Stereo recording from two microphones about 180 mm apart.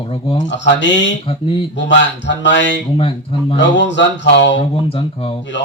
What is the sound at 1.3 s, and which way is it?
Speech, 30° left (ahead or behind).